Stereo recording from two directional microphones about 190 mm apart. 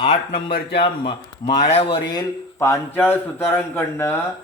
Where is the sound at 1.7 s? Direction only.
30° left (ahead or behind).